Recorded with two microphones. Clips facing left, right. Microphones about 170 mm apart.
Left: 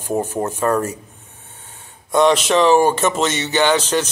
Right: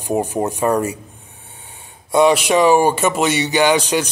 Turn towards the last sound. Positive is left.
turn(degrees=-10)  # may be behind; listen again after turning